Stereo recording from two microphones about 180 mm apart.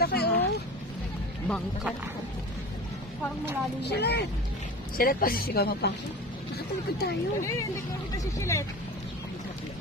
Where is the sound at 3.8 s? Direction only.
65° left (ahead or behind).